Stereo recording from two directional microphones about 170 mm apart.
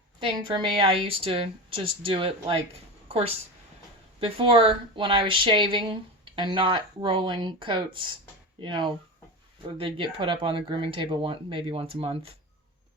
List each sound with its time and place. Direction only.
0.2 s a woman's voice: 30° right (ahead or behind)